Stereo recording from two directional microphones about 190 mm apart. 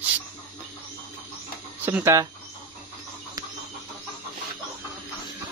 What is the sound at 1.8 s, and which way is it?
Speech, 15° right (ahead or behind).